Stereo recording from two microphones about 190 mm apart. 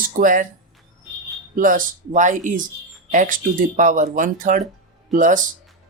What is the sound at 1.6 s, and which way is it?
Speech, 45° right (ahead or behind).